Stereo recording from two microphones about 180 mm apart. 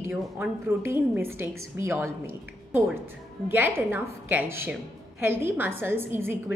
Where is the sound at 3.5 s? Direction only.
10° right (ahead or behind).